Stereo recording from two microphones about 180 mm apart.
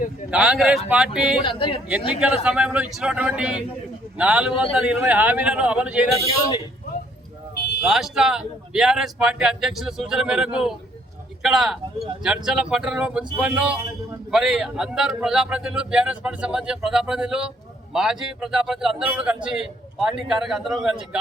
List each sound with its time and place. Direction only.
0.3 s a man's voice: 5° right (ahead or behind)
1.4 s speech: 30° left (ahead or behind)
1.9 s a man's voice: 5° right (ahead or behind)
7.8 s a man's voice: centre (ahead or behind)